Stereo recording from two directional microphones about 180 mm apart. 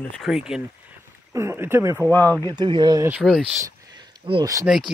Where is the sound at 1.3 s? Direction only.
15° right (ahead or behind).